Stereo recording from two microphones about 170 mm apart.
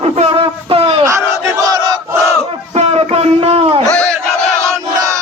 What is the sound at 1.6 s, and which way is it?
Battle cry, 25° right (ahead or behind).